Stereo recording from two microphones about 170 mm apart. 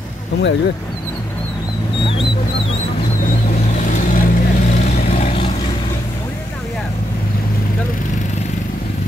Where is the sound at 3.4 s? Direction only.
50° left (ahead or behind).